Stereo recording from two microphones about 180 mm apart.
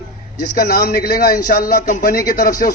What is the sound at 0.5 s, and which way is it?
A man's voice, 55° left (ahead or behind).